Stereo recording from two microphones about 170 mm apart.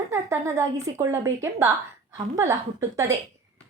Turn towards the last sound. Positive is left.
turn(degrees=-20)  # may be behind; listen again after turning